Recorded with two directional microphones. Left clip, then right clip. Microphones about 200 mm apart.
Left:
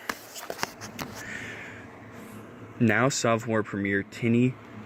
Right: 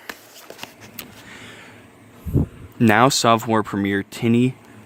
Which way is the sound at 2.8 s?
45° right (ahead or behind).